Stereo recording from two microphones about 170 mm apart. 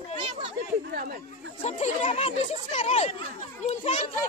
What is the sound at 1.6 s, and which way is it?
Speech, 40° left (ahead or behind).